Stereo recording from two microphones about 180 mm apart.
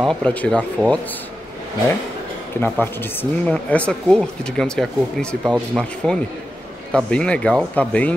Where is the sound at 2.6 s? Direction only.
10° left (ahead or behind).